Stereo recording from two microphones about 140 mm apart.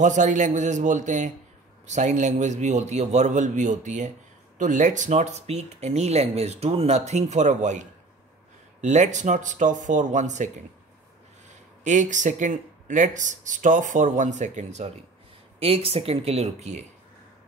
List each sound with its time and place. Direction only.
0.0 s speech: 60° right (ahead or behind)
11.8 s speech: 60° right (ahead or behind)
15.6 s speech: 45° right (ahead or behind)